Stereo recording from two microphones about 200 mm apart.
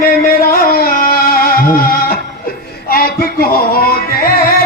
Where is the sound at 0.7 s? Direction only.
45° left (ahead or behind).